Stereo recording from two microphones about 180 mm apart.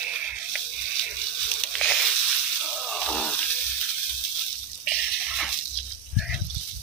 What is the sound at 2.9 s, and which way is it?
Water, 5° left (ahead or behind).